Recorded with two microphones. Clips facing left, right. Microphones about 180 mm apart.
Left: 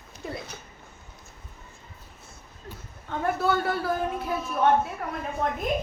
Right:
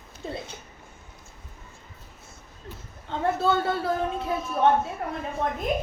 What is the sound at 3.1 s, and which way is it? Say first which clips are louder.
A woman's voice: right 1 dB; 25° right (ahead or behind).